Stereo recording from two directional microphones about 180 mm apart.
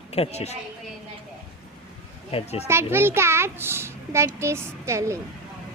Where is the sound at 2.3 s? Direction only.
35° left (ahead or behind).